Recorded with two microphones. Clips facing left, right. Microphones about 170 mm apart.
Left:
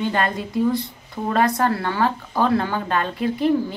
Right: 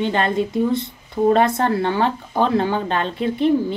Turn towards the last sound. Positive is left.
turn(degrees=-25)  # may be behind; listen again after turning